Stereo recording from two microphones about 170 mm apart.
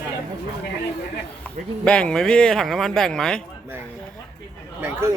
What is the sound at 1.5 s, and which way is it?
Speech, 5° left (ahead or behind).